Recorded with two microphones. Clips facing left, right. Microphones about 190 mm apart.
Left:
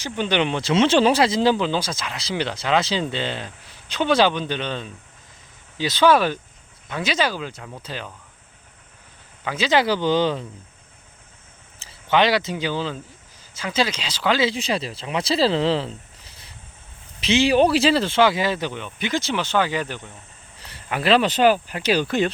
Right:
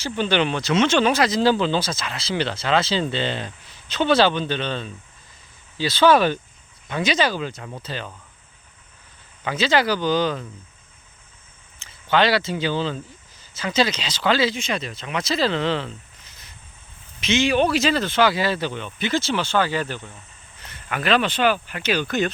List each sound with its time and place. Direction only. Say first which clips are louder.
0.0 s speech: right 1 dB; 15° left (ahead or behind)
9.4 s speech: right 1 dB; 5° left (ahead or behind)
9.6 s speech: left 1 dB; 25° left (ahead or behind)
12.0 s speech: even; 20° left (ahead or behind)
14.4 s speech: left 1 dB; 30° left (ahead or behind); by 20.1 s 15° left (ahead or behind)
20.6 s speech: left 2 dB; 35° left (ahead or behind)